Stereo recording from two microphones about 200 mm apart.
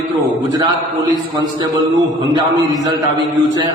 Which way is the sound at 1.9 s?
15° right (ahead or behind).